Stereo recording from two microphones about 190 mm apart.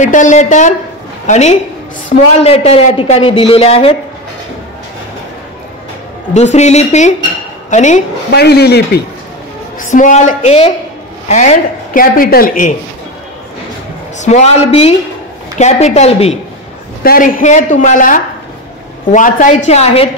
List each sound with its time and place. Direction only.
0.0 s a man's voice: 40° left (ahead or behind)
6.3 s a man's voice: 35° left (ahead or behind)
8.3 s speech: 60° left (ahead or behind)
9.8 s a man's voice: 40° left (ahead or behind)
14.2 s a man's voice: 35° left (ahead or behind)
17.0 s a woman's voice: 45° left (ahead or behind)